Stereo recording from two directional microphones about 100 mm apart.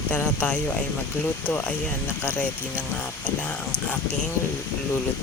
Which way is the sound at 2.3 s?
15° left (ahead or behind).